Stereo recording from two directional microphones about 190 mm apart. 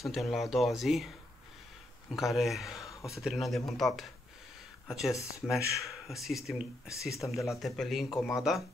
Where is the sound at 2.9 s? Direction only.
15° left (ahead or behind).